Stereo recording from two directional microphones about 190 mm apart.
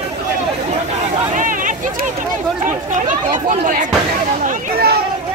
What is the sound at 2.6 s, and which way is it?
Chatter, 40° right (ahead or behind).